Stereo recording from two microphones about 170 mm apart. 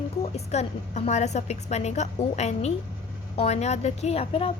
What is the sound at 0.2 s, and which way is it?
A woman's voice, 35° left (ahead or behind).